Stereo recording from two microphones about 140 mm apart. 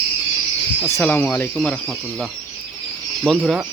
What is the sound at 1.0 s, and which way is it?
Speech, 10° left (ahead or behind).